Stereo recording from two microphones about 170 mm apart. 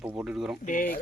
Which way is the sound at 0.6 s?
50° left (ahead or behind).